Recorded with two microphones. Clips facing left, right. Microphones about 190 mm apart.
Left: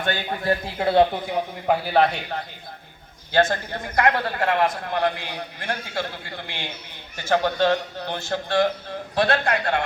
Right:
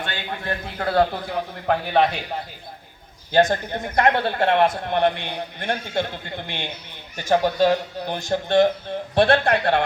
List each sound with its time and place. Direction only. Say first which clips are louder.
0.3 s a man's voice: left 4 dB; 30° left (ahead or behind); by 2.2 s centre (ahead or behind)
3.3 s a man's voice: right 2 dB; 15° right (ahead or behind); by 9.8 s 35° right (ahead or behind)